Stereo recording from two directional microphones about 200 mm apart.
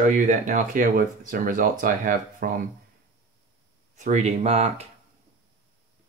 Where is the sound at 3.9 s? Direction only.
35° right (ahead or behind).